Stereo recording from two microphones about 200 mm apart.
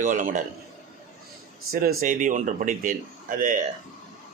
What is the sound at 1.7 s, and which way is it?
Speech, 45° right (ahead or behind).